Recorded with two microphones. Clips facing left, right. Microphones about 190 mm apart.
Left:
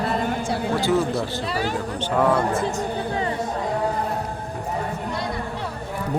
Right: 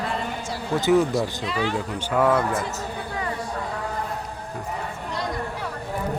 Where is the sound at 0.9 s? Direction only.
15° right (ahead or behind).